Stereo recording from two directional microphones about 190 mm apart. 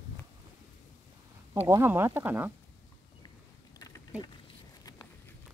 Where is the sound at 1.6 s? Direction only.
10° right (ahead or behind).